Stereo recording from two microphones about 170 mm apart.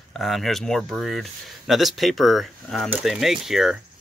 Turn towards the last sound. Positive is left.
turn(degrees=0)  # may be behind; listen again after turning